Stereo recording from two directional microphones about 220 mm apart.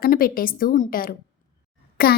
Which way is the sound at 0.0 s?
40° left (ahead or behind).